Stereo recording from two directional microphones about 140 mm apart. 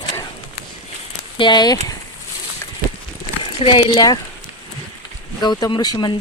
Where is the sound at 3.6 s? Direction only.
35° left (ahead or behind).